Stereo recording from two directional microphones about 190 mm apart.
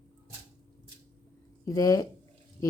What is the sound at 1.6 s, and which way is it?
Speech, 20° left (ahead or behind).